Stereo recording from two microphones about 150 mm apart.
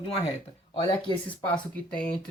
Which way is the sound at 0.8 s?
35° left (ahead or behind).